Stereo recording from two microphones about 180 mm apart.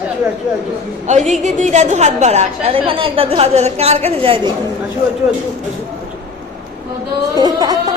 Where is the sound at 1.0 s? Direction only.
40° right (ahead or behind).